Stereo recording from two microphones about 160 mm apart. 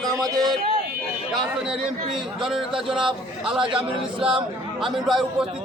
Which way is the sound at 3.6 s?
35° right (ahead or behind).